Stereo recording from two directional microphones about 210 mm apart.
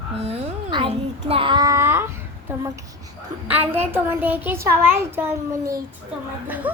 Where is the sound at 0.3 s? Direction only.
25° right (ahead or behind).